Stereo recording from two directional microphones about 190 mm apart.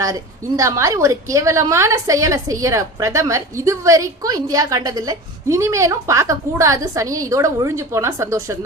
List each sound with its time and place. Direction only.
0.0 s a woman's voice: 15° right (ahead or behind)